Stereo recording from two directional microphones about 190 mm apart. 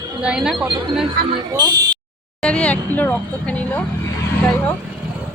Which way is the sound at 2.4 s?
5° left (ahead or behind).